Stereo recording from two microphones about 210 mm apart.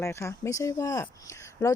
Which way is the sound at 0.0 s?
15° left (ahead or behind).